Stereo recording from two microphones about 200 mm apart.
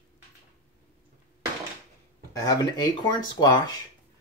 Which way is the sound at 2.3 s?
15° left (ahead or behind).